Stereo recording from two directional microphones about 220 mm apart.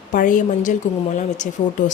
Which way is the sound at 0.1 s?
35° left (ahead or behind).